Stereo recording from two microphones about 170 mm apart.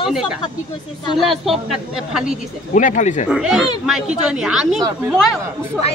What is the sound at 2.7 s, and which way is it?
Speech, 50° left (ahead or behind).